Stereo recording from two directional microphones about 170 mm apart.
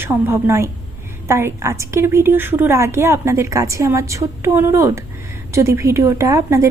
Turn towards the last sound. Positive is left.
turn(degrees=-20)  # may be behind; listen again after turning